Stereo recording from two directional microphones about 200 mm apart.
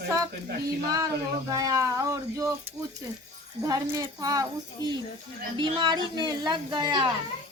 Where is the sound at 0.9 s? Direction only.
20° right (ahead or behind).